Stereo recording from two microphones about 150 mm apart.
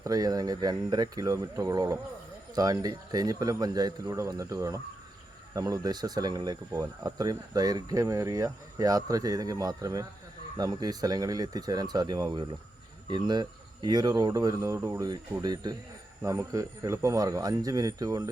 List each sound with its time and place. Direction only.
0.0 s speech: 25° right (ahead or behind)